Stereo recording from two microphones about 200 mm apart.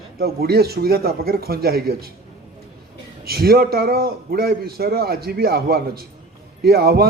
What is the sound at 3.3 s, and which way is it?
A man's voice, 50° right (ahead or behind).